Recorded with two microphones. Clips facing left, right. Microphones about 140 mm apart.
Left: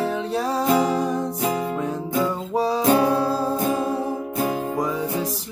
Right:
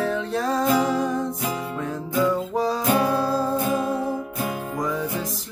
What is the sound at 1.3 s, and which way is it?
Music, 35° left (ahead or behind).